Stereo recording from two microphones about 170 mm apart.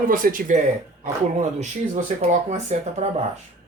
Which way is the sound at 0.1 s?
55° right (ahead or behind).